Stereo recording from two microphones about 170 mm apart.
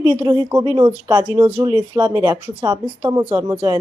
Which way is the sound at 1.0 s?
15° right (ahead or behind).